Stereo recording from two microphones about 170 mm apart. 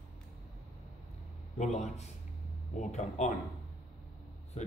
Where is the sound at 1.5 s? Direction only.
40° left (ahead or behind).